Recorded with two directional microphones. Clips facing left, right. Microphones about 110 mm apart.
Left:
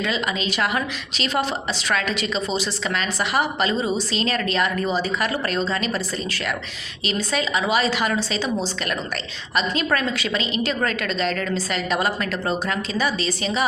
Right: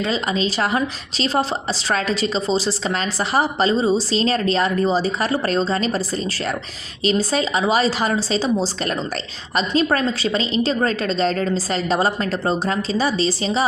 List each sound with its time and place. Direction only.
0.0 s a woman's voice: 35° right (ahead or behind)
7.0 s a woman's voice: 35° right (ahead or behind)